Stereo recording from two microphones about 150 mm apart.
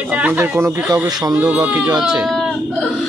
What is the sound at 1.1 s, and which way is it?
Speech, 25° right (ahead or behind).